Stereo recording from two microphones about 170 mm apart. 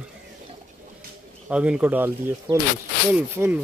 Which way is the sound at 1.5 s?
5° right (ahead or behind).